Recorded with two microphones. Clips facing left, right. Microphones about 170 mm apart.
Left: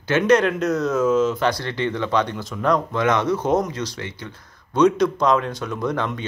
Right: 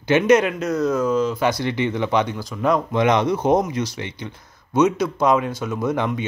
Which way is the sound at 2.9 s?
15° right (ahead or behind).